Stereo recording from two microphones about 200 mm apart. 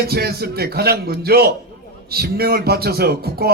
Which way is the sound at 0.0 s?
50° right (ahead or behind).